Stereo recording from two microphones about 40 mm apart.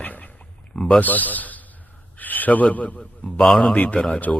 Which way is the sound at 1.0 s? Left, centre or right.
Left.